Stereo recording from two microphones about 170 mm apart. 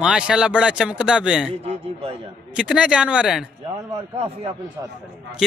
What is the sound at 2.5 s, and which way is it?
Speech, 5° right (ahead or behind).